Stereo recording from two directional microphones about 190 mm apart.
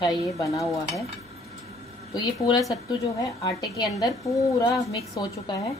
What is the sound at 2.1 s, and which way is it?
A woman's voice, 25° left (ahead or behind).